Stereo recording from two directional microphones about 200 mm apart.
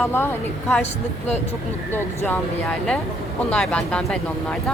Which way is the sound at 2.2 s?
10° left (ahead or behind).